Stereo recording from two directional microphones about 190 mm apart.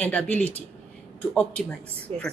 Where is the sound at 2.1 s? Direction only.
30° right (ahead or behind).